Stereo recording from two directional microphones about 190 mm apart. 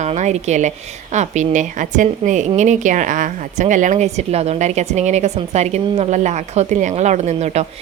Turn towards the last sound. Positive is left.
turn(degrees=-35)  # may be behind; listen again after turning